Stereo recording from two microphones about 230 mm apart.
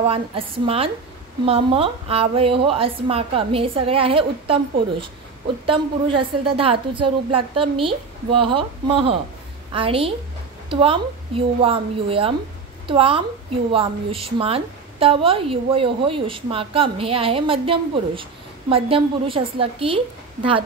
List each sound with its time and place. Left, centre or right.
0.0 s a woman's voice: right
5.7 s a woman's voice: right